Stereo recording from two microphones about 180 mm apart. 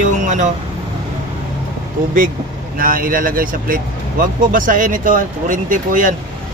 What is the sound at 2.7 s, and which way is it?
Speech, 50° right (ahead or behind).